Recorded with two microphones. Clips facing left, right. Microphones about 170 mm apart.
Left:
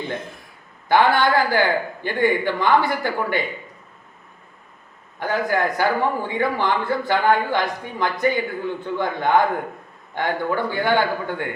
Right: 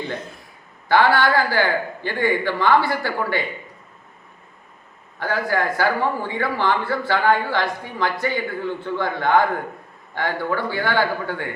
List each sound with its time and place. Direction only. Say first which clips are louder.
0.9 s a man's voice: even; 20° left (ahead or behind)
5.2 s a man's voice: left 1 dB; 20° left (ahead or behind)